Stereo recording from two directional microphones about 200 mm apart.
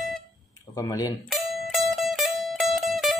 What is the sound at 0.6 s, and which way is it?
Speech, 20° left (ahead or behind).